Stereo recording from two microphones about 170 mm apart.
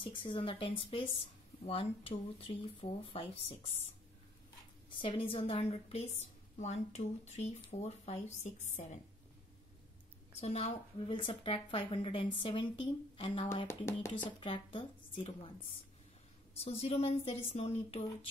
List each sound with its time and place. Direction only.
0.0 s a woman's voice: 30° left (ahead or behind)
10.4 s a woman's voice: 35° left (ahead or behind)
16.5 s a woman's voice: 35° left (ahead or behind)